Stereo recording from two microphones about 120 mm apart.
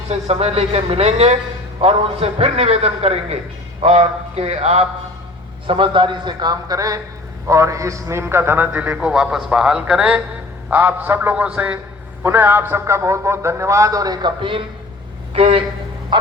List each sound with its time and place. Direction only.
0.1 s a man's voice: 60° right (ahead or behind)
5.6 s a man's voice: 45° right (ahead or behind)
15.3 s a man's voice: 55° right (ahead or behind)